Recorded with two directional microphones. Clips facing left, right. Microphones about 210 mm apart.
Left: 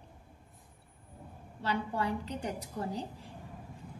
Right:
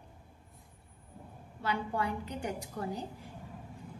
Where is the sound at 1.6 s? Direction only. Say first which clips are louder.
Left 1 dB; 35° left (ahead or behind).